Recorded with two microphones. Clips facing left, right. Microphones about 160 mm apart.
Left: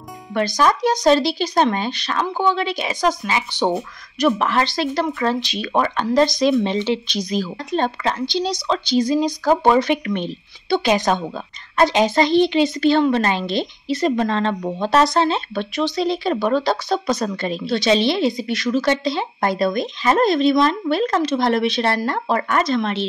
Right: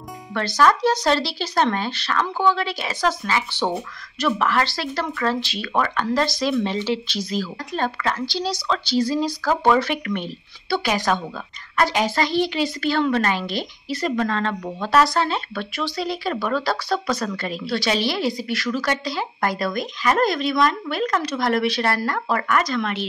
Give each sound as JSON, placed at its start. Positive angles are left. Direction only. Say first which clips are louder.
{"t": 0.3, "sound": "speech", "louder": "left 1 dB", "side_deg": 15}